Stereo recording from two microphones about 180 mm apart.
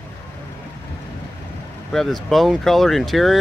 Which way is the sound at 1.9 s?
Centre (ahead or behind).